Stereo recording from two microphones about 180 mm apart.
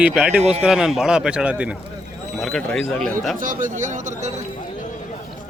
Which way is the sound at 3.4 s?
45° right (ahead or behind).